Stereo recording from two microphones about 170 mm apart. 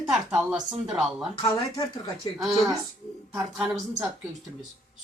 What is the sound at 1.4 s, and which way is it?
Speech, 20° left (ahead or behind).